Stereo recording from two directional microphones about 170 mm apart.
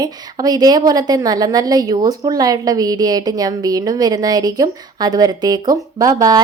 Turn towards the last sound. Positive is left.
turn(degrees=-20)  # may be behind; listen again after turning